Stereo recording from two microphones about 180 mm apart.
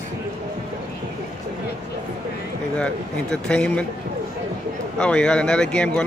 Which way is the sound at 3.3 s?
5° left (ahead or behind).